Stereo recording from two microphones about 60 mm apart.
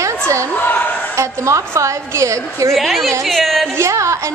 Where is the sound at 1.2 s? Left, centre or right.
Right.